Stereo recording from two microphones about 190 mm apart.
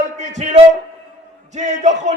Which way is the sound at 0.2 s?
35° right (ahead or behind).